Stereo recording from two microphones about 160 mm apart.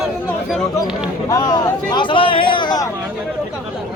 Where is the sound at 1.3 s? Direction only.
25° left (ahead or behind).